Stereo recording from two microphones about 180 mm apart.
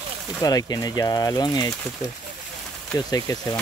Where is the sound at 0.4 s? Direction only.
20° left (ahead or behind).